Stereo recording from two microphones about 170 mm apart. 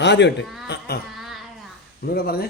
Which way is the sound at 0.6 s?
75° left (ahead or behind).